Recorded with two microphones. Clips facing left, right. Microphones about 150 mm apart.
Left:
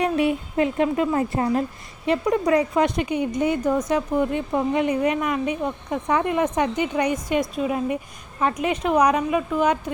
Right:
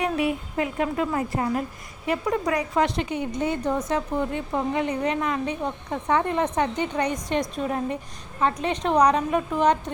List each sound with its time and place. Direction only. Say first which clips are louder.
0.2 s speech: left 4 dB; 25° left (ahead or behind); by 9.9 s 5° left (ahead or behind)